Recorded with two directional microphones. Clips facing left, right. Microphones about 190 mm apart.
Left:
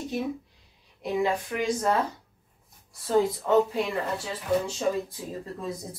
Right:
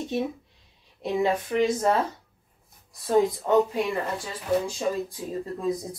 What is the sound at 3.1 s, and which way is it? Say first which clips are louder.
Speech: right 1 dB; 15° right (ahead or behind).